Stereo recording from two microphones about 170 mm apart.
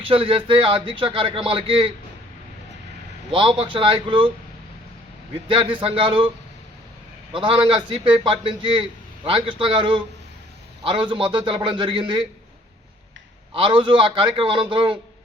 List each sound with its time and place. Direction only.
0.0 s speech: 35° right (ahead or behind)
3.3 s speech: 30° right (ahead or behind)
5.5 s speech: 30° right (ahead or behind)
7.3 s a man's voice: 30° right (ahead or behind)
13.5 s a man's voice: 30° right (ahead or behind)